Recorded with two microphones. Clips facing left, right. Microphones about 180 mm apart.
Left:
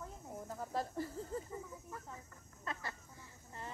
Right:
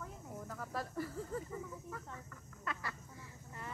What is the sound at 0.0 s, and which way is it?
Snake, 25° left (ahead or behind).